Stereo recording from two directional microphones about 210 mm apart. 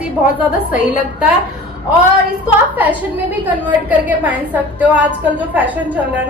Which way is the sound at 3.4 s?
10° right (ahead or behind).